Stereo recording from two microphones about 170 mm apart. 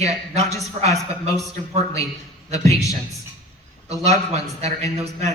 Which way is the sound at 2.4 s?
40° right (ahead or behind).